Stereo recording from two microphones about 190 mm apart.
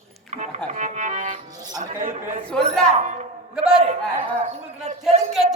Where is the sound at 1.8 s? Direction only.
40° right (ahead or behind).